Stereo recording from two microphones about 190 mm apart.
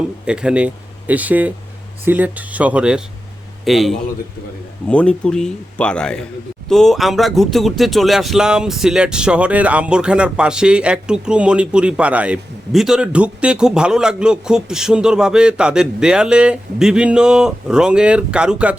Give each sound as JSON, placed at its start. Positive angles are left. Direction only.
{"t": 0.3, "sound": "speech", "side_deg": -5}